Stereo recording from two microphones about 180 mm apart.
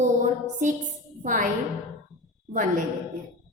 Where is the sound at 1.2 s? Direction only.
45° right (ahead or behind).